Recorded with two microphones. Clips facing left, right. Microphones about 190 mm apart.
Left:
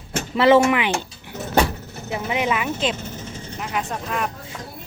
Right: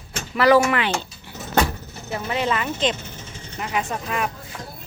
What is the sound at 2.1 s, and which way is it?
Speech, 15° left (ahead or behind).